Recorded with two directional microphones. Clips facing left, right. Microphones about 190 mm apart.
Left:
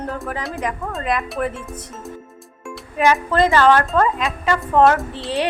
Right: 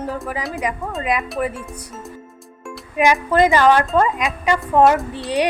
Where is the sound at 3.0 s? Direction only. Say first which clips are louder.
Right 1 dB; 10° right (ahead or behind).